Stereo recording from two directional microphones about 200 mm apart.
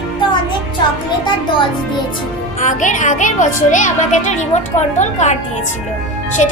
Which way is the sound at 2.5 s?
40° left (ahead or behind).